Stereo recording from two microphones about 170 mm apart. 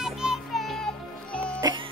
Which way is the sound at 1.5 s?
20° right (ahead or behind).